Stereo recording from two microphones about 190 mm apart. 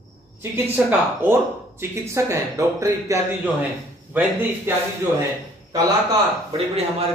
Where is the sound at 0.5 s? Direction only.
10° right (ahead or behind).